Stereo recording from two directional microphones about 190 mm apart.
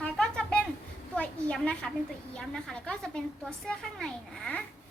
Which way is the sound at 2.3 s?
5° left (ahead or behind).